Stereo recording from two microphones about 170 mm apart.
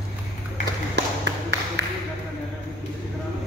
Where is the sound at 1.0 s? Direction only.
90° right.